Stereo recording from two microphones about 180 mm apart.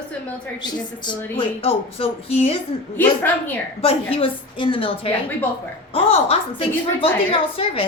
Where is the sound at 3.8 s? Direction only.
35° left (ahead or behind).